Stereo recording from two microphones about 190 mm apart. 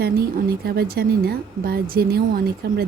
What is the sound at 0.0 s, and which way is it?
A woman's voice, 55° right (ahead or behind).